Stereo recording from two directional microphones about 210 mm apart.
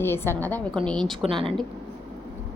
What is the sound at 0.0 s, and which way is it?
A woman's voice, 10° left (ahead or behind).